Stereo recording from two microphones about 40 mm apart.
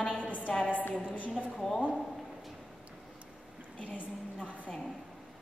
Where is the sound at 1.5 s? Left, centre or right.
Centre.